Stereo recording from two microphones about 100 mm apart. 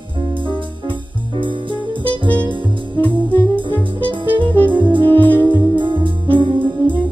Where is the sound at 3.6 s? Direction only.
55° right (ahead or behind).